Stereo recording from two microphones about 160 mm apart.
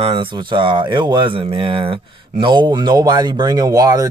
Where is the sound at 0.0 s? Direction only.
35° right (ahead or behind).